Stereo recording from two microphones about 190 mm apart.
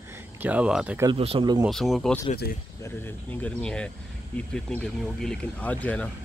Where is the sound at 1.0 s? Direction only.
30° right (ahead or behind).